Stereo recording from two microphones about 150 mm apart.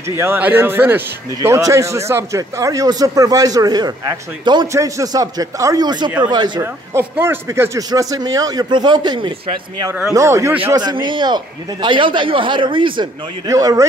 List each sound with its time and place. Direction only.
0.2 s speech: 15° right (ahead or behind); by 6.6 s 30° right (ahead or behind)
6.6 s speech: 15° right (ahead or behind)
10.1 s a man's voice: 20° right (ahead or behind)
13.5 s speech: 20° right (ahead or behind)